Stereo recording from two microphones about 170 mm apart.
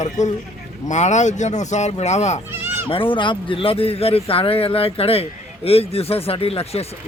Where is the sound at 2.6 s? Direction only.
15° right (ahead or behind).